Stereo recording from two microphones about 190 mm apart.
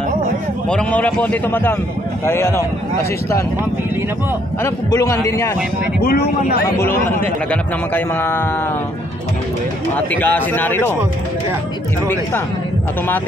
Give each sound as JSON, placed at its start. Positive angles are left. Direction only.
{"t": 0.7, "sound": "a man's voice", "side_deg": 5}
{"t": 4.6, "sound": "a man's voice", "side_deg": 15}
{"t": 5.9, "sound": "speech", "side_deg": 55}
{"t": 7.9, "sound": "a man's voice", "side_deg": 10}
{"t": 9.9, "sound": "a man's voice", "side_deg": 10}